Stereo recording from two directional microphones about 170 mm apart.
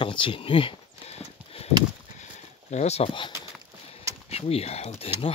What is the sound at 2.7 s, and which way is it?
Speech, 40° left (ahead or behind).